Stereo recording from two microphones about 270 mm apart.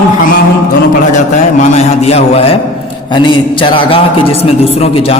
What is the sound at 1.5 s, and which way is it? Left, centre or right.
A man's voice, left.